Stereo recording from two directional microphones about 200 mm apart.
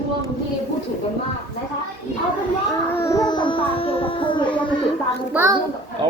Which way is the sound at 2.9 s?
15° left (ahead or behind).